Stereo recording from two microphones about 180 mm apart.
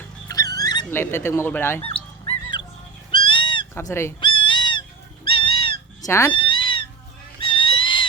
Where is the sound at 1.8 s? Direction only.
30° left (ahead or behind).